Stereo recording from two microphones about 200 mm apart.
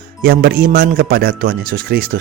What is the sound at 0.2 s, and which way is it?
Speech, 50° right (ahead or behind).